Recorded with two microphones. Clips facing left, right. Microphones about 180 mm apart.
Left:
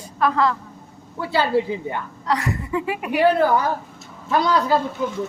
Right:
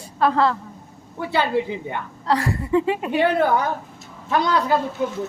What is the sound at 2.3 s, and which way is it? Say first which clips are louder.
A woman's voice: right 3 dB; 30° right (ahead or behind).